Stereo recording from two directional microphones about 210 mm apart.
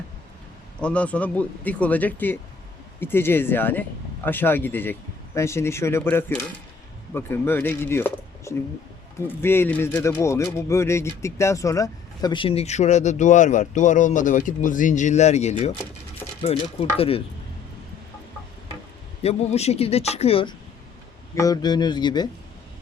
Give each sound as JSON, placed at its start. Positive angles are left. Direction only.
{"t": 0.8, "sound": "speech", "side_deg": 5}
{"t": 19.2, "sound": "speech", "side_deg": 30}